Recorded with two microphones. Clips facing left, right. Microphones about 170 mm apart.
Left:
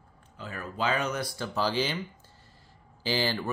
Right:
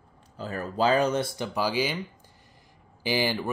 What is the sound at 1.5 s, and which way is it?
Speech, 10° right (ahead or behind).